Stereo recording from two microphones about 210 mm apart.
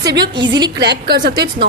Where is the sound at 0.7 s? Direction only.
55° right (ahead or behind).